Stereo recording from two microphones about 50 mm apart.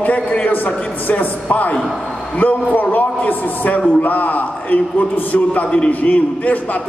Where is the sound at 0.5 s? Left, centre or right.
Left.